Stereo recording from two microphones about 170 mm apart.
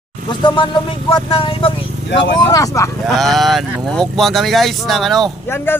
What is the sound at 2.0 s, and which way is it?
Speech, 90° left.